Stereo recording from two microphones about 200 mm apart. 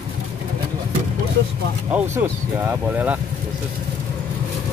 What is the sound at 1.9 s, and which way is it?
Speech, 10° right (ahead or behind).